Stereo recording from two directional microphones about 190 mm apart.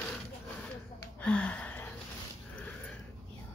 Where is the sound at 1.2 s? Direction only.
5° left (ahead or behind).